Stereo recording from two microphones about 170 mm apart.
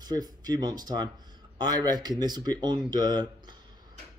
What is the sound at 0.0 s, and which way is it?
Speech, 25° right (ahead or behind).